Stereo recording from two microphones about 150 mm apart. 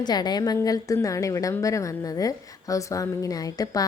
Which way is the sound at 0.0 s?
25° left (ahead or behind).